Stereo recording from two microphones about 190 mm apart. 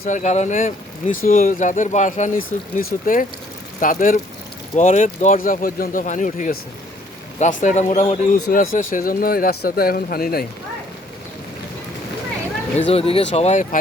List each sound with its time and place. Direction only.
0.0 s speech: 40° left (ahead or behind)
12.9 s speech: 30° left (ahead or behind)